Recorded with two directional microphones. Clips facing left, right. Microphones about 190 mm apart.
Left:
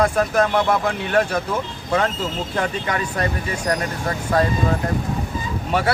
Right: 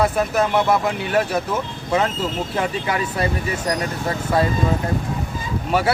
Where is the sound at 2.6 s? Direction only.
10° right (ahead or behind).